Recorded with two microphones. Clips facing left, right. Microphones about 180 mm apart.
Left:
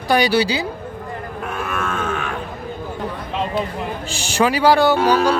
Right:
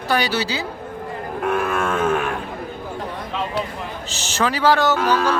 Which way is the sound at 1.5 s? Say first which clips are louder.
Right 5 dB; 55° right (ahead or behind).